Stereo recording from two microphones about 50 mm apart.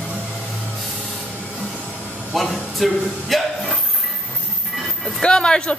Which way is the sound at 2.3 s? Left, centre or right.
Centre.